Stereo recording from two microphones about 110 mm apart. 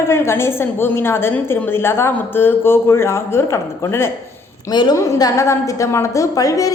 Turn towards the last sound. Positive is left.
turn(degrees=30)  # may be behind; listen again after turning